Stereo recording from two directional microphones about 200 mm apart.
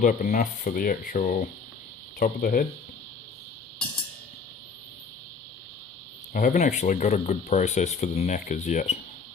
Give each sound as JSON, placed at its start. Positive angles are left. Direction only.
{"t": 0.0, "sound": "speech", "side_deg": 40}
{"t": 6.3, "sound": "speech", "side_deg": 40}